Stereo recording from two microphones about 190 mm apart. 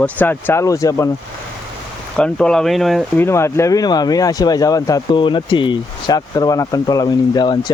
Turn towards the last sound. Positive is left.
turn(degrees=20)  # may be behind; listen again after turning